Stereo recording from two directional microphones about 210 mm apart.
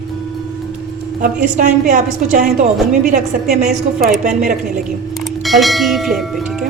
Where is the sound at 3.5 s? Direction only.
35° right (ahead or behind).